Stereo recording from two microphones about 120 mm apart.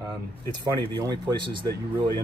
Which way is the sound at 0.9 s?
40° right (ahead or behind).